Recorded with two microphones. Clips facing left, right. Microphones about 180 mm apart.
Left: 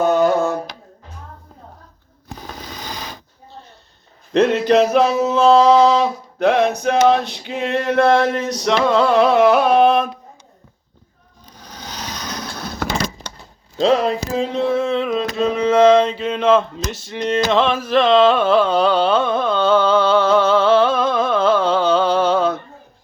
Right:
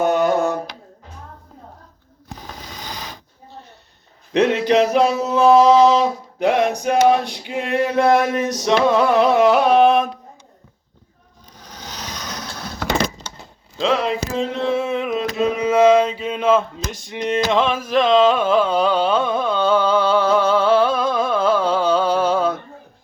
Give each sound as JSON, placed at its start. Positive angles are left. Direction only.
{"t": 0.0, "sound": "a sound", "side_deg": -15}
{"t": 4.6, "sound": "male singing", "side_deg": -15}
{"t": 13.7, "sound": "speech", "side_deg": 40}
{"t": 14.7, "sound": "mantra", "side_deg": -10}